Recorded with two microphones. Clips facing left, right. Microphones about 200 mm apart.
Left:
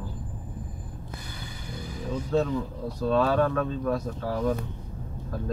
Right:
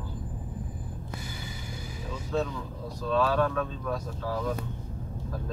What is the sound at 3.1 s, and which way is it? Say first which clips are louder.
Speech: left 3 dB; 50° left (ahead or behind).